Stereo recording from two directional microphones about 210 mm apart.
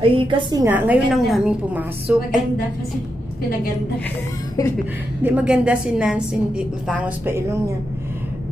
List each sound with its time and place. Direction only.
0.0 s a woman's voice: 25° right (ahead or behind)
0.7 s a woman's voice: 10° right (ahead or behind)
5.2 s a woman's voice: 5° right (ahead or behind)